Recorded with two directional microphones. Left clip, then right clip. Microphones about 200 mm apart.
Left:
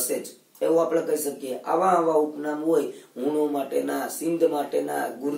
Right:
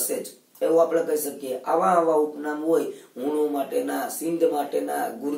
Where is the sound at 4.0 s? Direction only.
15° left (ahead or behind).